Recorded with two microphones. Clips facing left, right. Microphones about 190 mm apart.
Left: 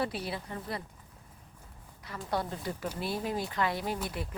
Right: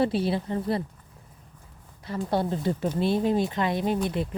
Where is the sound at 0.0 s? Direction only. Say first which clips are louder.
Right 10 dB; 30° right (ahead or behind).